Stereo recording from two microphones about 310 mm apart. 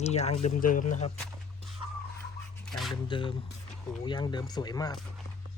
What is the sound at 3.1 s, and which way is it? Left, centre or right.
Speech, centre.